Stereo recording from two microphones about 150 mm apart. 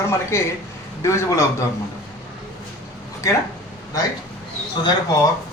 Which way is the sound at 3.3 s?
20° left (ahead or behind).